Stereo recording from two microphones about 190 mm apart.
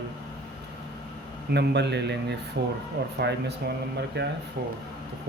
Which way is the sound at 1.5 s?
60° right (ahead or behind).